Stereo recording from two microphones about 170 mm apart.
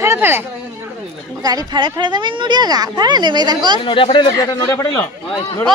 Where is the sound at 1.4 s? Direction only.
25° right (ahead or behind).